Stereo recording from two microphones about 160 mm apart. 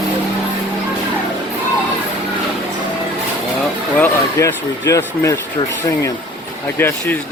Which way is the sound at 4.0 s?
20° left (ahead or behind).